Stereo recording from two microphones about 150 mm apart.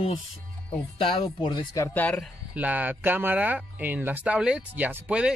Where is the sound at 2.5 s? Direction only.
10° right (ahead or behind).